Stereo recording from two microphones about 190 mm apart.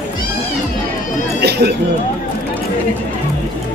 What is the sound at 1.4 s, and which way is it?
Chatter, 60° right (ahead or behind).